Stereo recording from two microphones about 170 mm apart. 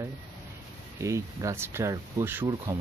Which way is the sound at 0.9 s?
20° right (ahead or behind).